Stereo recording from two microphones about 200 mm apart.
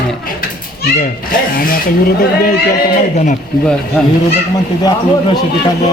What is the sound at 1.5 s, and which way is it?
Speech, 45° left (ahead or behind).